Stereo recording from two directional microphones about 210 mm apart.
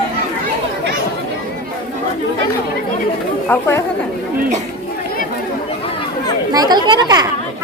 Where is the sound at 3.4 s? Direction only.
10° left (ahead or behind).